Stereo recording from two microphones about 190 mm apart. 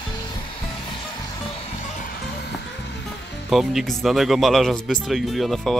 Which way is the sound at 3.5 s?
Centre (ahead or behind).